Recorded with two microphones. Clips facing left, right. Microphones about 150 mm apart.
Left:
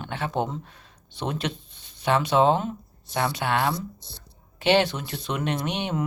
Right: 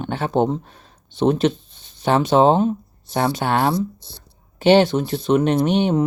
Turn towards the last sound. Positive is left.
turn(degrees=-30)  # may be behind; listen again after turning